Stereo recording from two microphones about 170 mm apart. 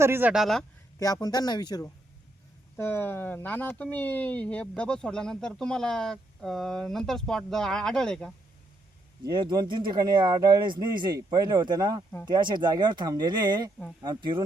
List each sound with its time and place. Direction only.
0.0 s speech: 10° right (ahead or behind)
0.9 s speech: 20° left (ahead or behind)
2.7 s speech: 15° left (ahead or behind)
9.2 s speech: 25° right (ahead or behind)